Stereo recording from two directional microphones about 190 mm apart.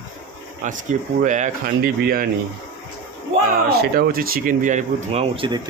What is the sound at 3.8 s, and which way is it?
Speech, 55° right (ahead or behind).